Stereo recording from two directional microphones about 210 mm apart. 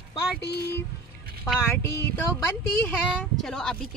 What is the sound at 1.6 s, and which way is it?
Speech, 10° left (ahead or behind).